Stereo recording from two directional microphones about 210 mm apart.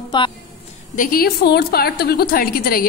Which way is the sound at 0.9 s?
40° left (ahead or behind).